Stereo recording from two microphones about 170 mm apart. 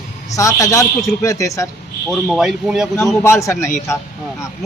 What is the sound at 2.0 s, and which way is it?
Speech, centre (ahead or behind).